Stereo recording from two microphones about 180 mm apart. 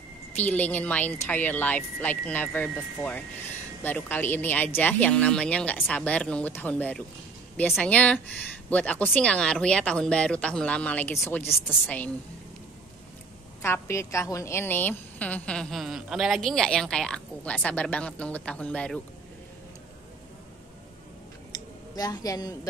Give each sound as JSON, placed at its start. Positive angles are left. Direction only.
{"t": 0.4, "sound": "a woman's voice", "side_deg": 10}
{"t": 13.6, "sound": "a woman's voice", "side_deg": 15}
{"t": 21.5, "sound": "a sound", "side_deg": 20}